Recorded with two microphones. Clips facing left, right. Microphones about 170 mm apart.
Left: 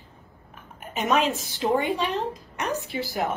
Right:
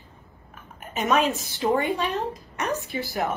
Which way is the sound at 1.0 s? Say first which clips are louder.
Right 1 dB; 15° left (ahead or behind).